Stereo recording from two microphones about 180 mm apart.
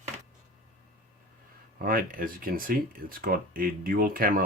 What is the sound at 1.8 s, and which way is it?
Speech, 50° right (ahead or behind).